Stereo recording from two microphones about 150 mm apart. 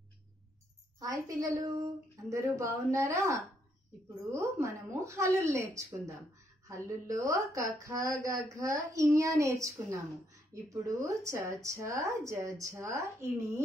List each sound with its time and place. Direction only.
0.9 s speech: 25° right (ahead or behind)
4.3 s speech: 20° right (ahead or behind)
6.7 s speech: 20° right (ahead or behind)